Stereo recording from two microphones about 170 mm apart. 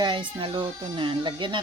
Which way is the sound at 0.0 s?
30° right (ahead or behind).